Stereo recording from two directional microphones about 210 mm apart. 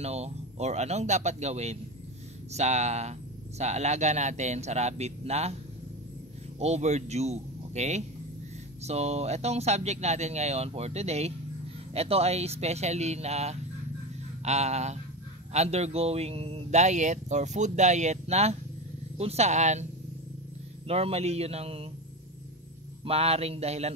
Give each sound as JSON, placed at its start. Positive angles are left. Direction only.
{"t": 0.0, "sound": "speech", "side_deg": -30}
{"t": 6.6, "sound": "speech", "side_deg": -30}
{"t": 23.0, "sound": "speech", "side_deg": -30}